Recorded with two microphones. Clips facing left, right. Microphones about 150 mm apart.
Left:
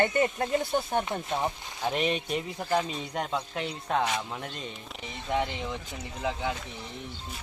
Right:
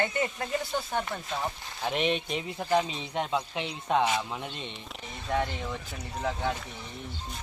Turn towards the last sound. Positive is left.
turn(degrees=10)  # may be behind; listen again after turning